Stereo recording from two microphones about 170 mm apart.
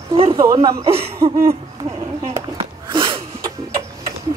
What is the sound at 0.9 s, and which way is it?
Speech, 35° right (ahead or behind).